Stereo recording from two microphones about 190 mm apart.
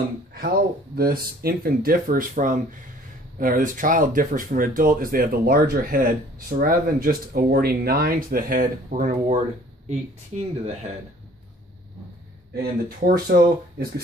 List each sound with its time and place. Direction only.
0.9 s speech: 50° right (ahead or behind); by 10.9 s 35° right (ahead or behind)
12.5 s speech: 50° right (ahead or behind)